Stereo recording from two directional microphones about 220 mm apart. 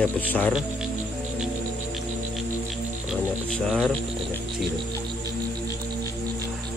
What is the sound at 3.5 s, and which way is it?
Speech, centre (ahead or behind).